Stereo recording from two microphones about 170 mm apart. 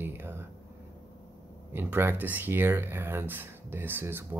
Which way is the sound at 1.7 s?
15° right (ahead or behind).